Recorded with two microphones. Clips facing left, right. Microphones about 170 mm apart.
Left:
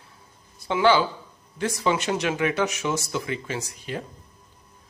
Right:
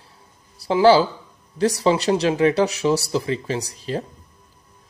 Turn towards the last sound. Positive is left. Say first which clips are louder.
# right 6 dB
turn(degrees=-35)  # may be behind; listen again after turning